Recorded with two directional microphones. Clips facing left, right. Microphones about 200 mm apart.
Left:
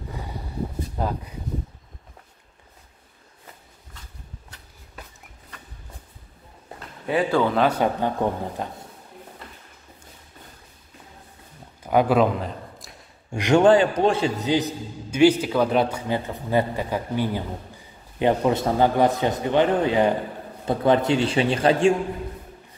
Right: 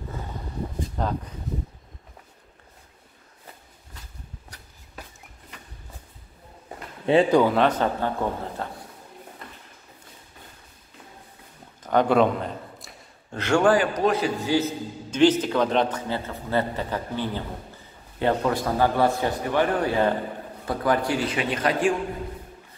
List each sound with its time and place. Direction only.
0.9 s a sound: 10° left (ahead or behind)
7.1 s speech: 20° right (ahead or behind)
7.5 s a man's voice: 10° left (ahead or behind)
11.8 s a man's voice: 10° left (ahead or behind)
13.3 s a man's voice: 15° left (ahead or behind)